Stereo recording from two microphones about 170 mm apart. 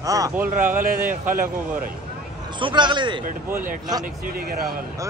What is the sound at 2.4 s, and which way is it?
Speech, 30° right (ahead or behind).